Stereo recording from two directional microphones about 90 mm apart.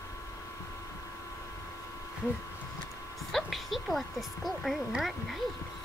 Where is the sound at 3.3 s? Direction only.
Centre (ahead or behind).